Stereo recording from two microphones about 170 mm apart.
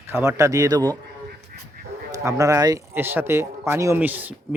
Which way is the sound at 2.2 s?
20° right (ahead or behind).